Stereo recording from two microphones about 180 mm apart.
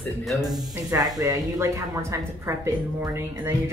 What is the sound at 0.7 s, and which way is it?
A woman's voice, 20° right (ahead or behind).